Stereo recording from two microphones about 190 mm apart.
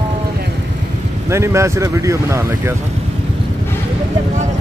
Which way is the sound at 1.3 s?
15° right (ahead or behind).